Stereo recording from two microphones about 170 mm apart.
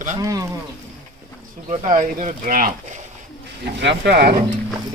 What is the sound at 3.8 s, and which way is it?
Speech, 80° right.